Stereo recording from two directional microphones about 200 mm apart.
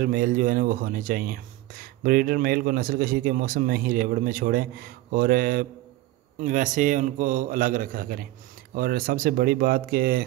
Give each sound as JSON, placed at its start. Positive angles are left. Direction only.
{"t": 0.0, "sound": "a man's voice", "side_deg": -40}